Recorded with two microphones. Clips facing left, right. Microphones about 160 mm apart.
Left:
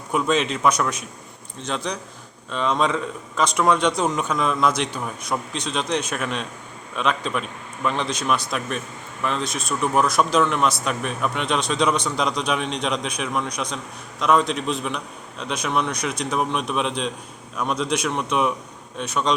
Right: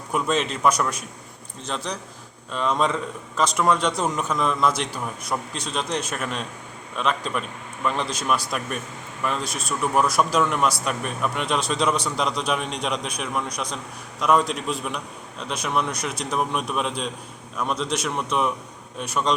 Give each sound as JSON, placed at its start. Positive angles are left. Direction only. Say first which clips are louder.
{"t": 0.1, "sound": "speech", "louder": "left 2 dB", "side_deg": 0}